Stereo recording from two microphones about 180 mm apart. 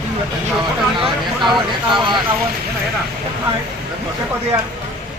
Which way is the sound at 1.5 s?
25° right (ahead or behind).